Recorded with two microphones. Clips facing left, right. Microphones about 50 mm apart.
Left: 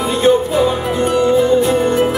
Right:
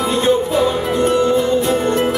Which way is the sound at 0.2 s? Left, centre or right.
Centre.